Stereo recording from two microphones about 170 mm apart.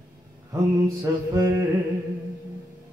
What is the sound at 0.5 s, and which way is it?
Mantra, 20° right (ahead or behind).